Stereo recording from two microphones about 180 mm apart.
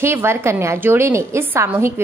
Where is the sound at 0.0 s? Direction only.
15° right (ahead or behind).